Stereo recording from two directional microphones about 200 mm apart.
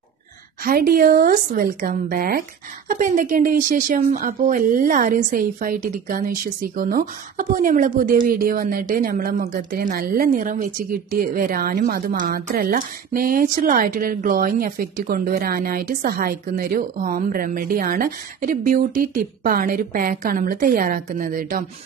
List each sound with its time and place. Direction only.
0.7 s speech: 45° right (ahead or behind)